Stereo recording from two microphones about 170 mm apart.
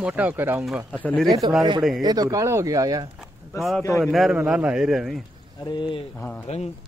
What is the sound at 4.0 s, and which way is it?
A man's voice, centre (ahead or behind).